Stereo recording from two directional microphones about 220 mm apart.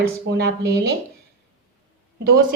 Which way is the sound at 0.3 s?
45° right (ahead or behind).